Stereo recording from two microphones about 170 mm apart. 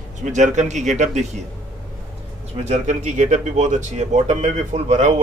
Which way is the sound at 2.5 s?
40° right (ahead or behind).